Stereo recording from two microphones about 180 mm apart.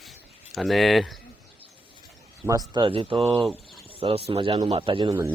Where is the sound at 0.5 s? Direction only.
Centre (ahead or behind).